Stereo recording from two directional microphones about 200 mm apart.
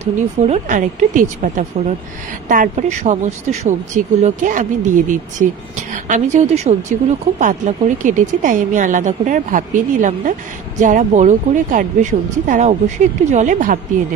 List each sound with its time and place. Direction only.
0.0 s speech: 35° right (ahead or behind)